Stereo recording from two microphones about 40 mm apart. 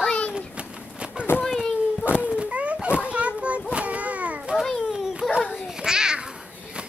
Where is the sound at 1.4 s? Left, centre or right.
Centre.